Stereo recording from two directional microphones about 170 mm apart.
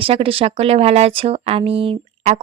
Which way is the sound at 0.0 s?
35° right (ahead or behind).